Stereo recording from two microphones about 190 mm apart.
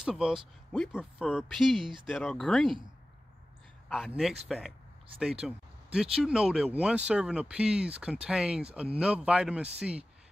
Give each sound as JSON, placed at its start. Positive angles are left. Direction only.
{"t": 0.0, "sound": "speech", "side_deg": -5}
{"t": 3.9, "sound": "speech", "side_deg": 0}